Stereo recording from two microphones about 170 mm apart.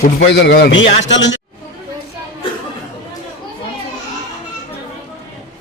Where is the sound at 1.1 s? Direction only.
90° left.